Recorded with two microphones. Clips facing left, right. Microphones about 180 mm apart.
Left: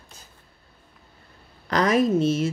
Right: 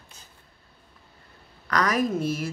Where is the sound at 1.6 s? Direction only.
25° left (ahead or behind).